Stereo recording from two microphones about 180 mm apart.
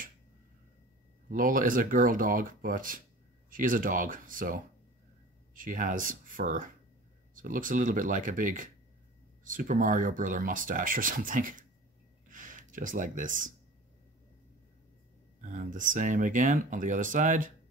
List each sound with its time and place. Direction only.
1.3 s speech: 50° right (ahead or behind)
12.3 s a sound: 50° right (ahead or behind)
15.4 s speech: 45° right (ahead or behind)